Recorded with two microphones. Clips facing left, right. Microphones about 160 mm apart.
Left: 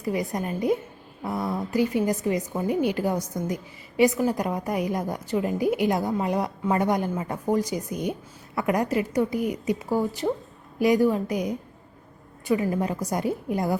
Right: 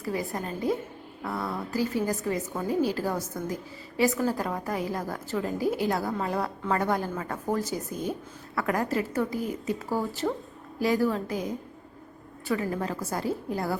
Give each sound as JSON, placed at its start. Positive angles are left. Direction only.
{"t": 0.0, "sound": "a woman's voice", "side_deg": 20}